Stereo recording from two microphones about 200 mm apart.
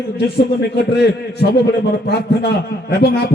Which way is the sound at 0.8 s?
55° left (ahead or behind).